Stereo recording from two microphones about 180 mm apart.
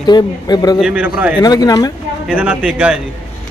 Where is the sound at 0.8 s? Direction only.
5° right (ahead or behind).